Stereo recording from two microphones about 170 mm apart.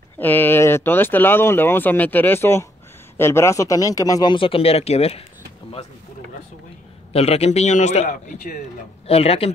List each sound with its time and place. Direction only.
0.2 s speech: 10° left (ahead or behind); by 5.2 s 35° left (ahead or behind)
7.1 s a man's voice: 35° left (ahead or behind)